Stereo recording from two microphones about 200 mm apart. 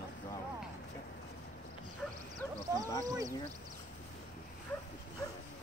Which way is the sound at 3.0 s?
15° right (ahead or behind).